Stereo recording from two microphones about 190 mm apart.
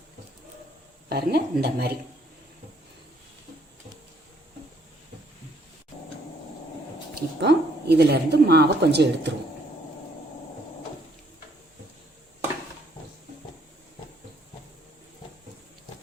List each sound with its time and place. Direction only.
1.1 s a woman's voice: 55° right (ahead or behind)
7.2 s a woman's voice: 60° right (ahead or behind)